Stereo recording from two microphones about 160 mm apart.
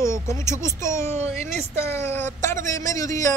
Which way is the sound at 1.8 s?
15° left (ahead or behind).